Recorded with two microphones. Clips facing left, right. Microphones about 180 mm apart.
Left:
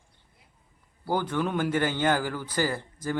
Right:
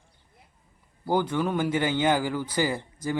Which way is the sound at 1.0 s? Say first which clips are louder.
Right 2 dB; 15° right (ahead or behind).